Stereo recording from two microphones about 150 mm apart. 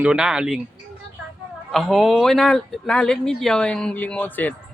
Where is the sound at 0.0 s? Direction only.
5° right (ahead or behind).